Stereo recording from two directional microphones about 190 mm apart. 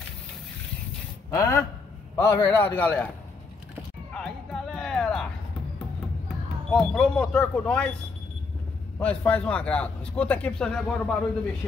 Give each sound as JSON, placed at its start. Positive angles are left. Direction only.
{"t": 1.3, "sound": "a man's voice", "side_deg": 15}
{"t": 4.1, "sound": "music", "side_deg": 0}
{"t": 6.7, "sound": "speech", "side_deg": 0}
{"t": 9.0, "sound": "a man's voice", "side_deg": 5}